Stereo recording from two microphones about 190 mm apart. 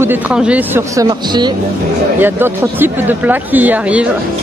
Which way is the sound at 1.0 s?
20° right (ahead or behind).